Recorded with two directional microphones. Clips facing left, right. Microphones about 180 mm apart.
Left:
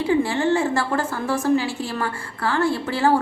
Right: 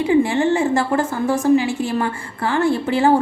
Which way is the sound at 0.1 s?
20° right (ahead or behind).